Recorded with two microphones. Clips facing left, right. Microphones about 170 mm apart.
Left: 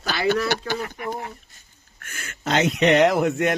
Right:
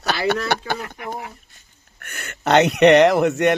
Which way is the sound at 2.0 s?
65° right (ahead or behind).